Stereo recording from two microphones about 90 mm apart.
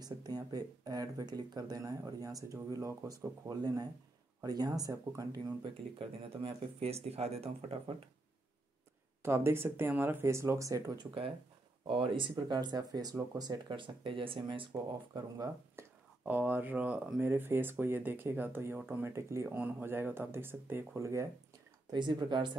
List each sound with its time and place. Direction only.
0.0 s speech: 45° right (ahead or behind)
5.6 s speech: 90° right
9.2 s speech: 30° right (ahead or behind)
10.9 s speech: 60° right (ahead or behind)
15.1 s speech: 45° right (ahead or behind)
15.8 s a sound: 30° right (ahead or behind)
16.3 s speech: 20° right (ahead or behind)
21.9 s speech: 55° right (ahead or behind)